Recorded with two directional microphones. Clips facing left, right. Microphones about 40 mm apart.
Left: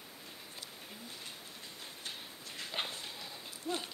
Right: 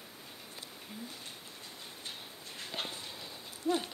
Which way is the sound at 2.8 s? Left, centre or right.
Left.